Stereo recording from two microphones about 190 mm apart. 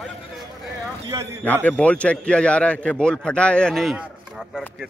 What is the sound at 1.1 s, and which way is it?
Speech, 15° right (ahead or behind).